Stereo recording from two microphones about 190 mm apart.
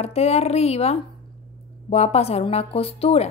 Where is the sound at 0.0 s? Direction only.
35° left (ahead or behind).